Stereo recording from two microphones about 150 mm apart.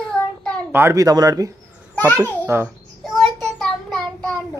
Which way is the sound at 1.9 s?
10° left (ahead or behind).